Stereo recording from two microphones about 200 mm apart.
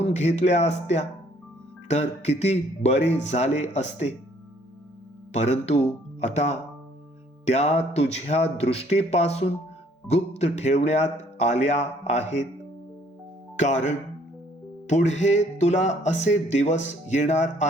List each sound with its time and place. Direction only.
0.0 s speech: 35° left (ahead or behind)
5.3 s speech: 35° left (ahead or behind)
13.6 s speech: 35° left (ahead or behind)